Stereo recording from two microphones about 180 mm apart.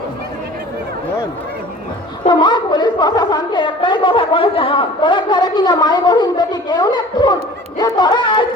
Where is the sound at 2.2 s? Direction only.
25° left (ahead or behind).